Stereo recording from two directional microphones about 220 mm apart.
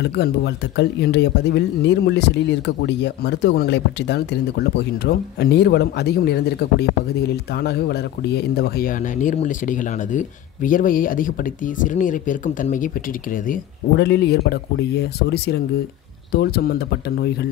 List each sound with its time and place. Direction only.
0.0 s speech: 50° left (ahead or behind)